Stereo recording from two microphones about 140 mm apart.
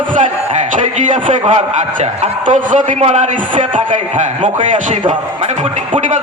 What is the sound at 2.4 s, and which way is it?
A man's voice, 65° right (ahead or behind).